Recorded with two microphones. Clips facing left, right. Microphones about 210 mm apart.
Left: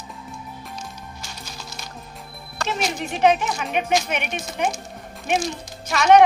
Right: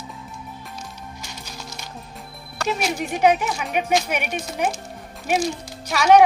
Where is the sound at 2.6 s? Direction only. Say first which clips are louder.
Right 2 dB; 10° right (ahead or behind).